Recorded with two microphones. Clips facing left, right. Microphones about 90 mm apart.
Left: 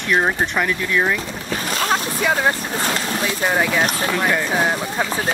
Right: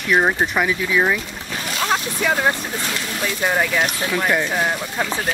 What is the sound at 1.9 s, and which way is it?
Vehicle, centre (ahead or behind).